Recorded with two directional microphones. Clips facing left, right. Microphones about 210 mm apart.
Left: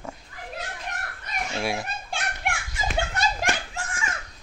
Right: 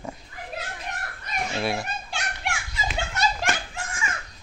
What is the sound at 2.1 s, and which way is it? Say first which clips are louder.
Children playing: left 1 dB; 50° left (ahead or behind).